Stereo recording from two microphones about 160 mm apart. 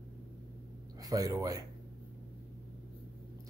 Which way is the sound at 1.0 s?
20° right (ahead or behind).